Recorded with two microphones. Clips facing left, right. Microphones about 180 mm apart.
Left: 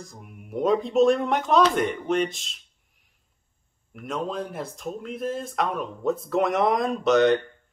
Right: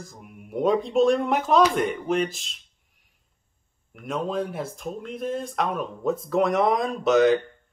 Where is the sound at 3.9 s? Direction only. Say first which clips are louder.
Right 2 dB; centre (ahead or behind).